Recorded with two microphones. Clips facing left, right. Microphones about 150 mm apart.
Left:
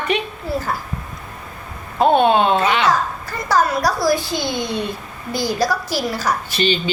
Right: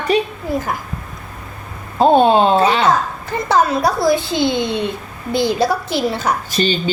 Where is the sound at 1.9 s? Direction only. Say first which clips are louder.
Right 3 dB; 35° right (ahead or behind).